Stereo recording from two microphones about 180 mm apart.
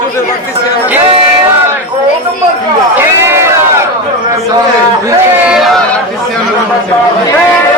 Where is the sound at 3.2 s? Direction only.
15° right (ahead or behind).